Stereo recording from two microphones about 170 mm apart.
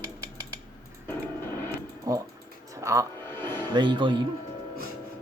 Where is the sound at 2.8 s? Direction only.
20° right (ahead or behind).